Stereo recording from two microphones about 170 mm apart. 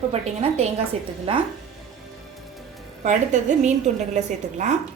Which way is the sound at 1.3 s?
35° right (ahead or behind).